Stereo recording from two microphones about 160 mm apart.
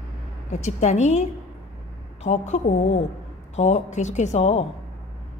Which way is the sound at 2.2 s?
45° left (ahead or behind).